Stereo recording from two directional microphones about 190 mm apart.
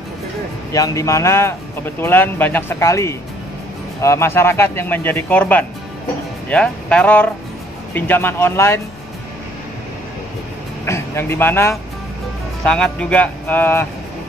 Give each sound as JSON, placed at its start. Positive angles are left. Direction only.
{"t": 0.7, "sound": "speech", "side_deg": 15}
{"t": 10.9, "sound": "speech", "side_deg": 10}